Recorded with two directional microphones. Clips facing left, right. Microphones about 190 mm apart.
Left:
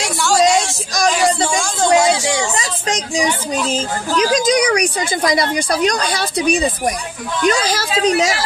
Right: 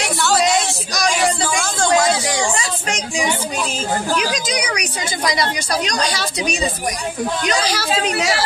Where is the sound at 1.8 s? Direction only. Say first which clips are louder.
Left 3 dB; 25° left (ahead or behind).